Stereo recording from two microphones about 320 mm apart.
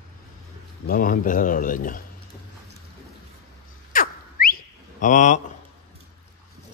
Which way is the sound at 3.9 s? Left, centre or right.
Left.